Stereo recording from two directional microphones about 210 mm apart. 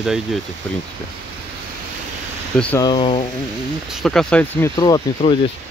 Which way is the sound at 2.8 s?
25° left (ahead or behind).